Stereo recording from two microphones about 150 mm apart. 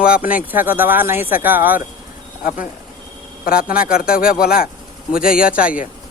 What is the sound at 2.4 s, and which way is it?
Speech, 70° left (ahead or behind).